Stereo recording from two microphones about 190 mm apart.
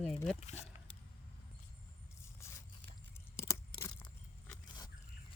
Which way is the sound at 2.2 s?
15° left (ahead or behind).